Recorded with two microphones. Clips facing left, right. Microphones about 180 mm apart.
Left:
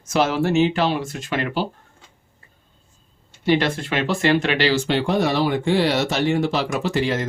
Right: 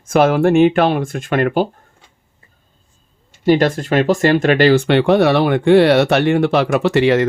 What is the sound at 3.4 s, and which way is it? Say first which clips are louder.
Speech: right 6 dB; 45° right (ahead or behind).